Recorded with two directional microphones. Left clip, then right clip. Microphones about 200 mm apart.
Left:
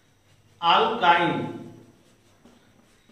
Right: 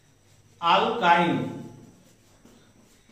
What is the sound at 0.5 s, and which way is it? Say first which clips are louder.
Speech: left 1 dB; 15° left (ahead or behind).